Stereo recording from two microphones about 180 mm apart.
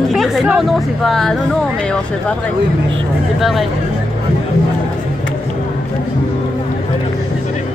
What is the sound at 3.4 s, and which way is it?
Speech, centre (ahead or behind).